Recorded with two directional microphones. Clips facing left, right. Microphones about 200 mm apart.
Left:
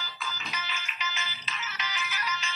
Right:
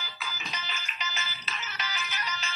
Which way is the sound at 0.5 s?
35° right (ahead or behind).